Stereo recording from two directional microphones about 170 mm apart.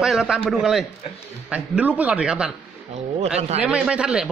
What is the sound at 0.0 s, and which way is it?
A man's voice, 5° right (ahead or behind).